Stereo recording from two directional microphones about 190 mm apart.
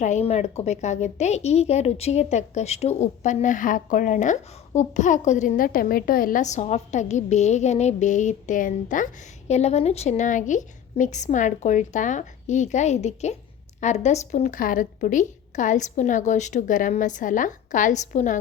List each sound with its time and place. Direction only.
0.0 s a woman's voice: 35° left (ahead or behind)